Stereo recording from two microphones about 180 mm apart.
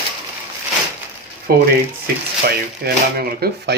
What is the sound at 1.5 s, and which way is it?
Speech, 60° right (ahead or behind).